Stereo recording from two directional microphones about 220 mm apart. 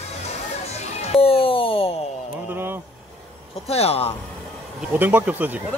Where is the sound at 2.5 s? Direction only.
10° right (ahead or behind).